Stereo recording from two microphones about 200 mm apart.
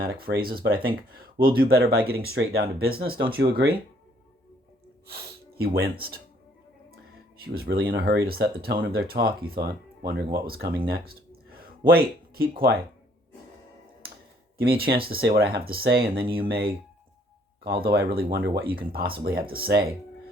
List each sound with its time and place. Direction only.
0.0 s speech: 50° right (ahead or behind)
5.0 s speech: 50° right (ahead or behind)
7.4 s speech: 50° right (ahead or behind)
14.7 s speech: 50° right (ahead or behind)